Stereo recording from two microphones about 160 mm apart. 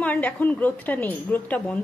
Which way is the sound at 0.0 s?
10° left (ahead or behind).